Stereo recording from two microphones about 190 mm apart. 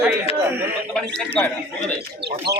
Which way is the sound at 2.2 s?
60° right (ahead or behind).